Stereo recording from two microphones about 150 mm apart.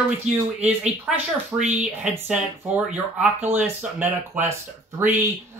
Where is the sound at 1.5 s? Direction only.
50° right (ahead or behind).